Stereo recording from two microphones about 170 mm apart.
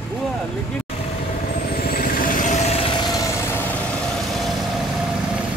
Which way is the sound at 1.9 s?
55° left (ahead or behind).